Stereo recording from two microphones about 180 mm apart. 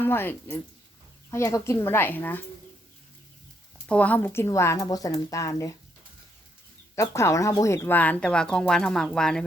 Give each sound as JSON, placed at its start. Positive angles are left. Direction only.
{"t": 0.0, "sound": "speech", "side_deg": 10}
{"t": 3.8, "sound": "speech", "side_deg": 5}
{"t": 6.9, "sound": "speech", "side_deg": 15}